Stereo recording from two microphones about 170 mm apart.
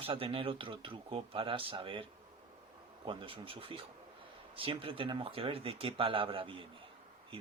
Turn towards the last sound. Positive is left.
turn(degrees=-30)  # may be behind; listen again after turning